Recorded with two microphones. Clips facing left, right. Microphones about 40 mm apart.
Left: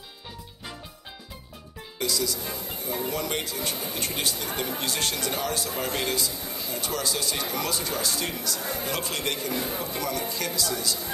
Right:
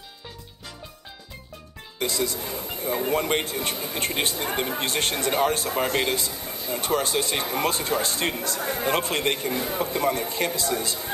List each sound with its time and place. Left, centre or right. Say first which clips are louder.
2.0 s speech: right 2 dB; right